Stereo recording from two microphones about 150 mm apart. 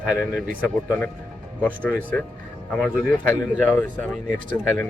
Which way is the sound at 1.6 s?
10° left (ahead or behind).